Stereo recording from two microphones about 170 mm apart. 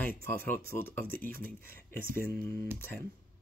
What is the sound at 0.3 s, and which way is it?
Speech, 10° left (ahead or behind).